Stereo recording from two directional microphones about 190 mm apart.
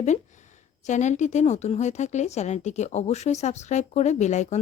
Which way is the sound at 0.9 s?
40° left (ahead or behind).